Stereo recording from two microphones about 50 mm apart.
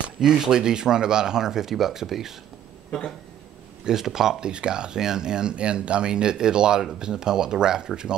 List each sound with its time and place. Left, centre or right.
0.2 s speech: centre
3.8 s speech: centre